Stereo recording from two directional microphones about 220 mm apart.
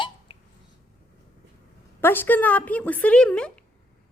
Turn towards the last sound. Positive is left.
turn(degrees=5)  # may be behind; listen again after turning